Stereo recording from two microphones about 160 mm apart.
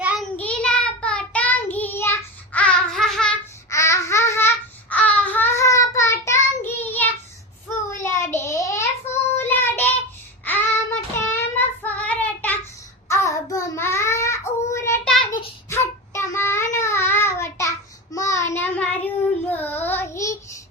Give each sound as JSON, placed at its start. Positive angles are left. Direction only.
{"t": 0.0, "sound": "child singing", "side_deg": -5}
{"t": 0.3, "sound": "child singing", "side_deg": 5}
{"t": 3.7, "sound": "babbling", "side_deg": 20}
{"t": 7.9, "sound": "child singing", "side_deg": 15}
{"t": 15.0, "sound": "child singing", "side_deg": 5}
{"t": 15.7, "sound": "child singing", "side_deg": 15}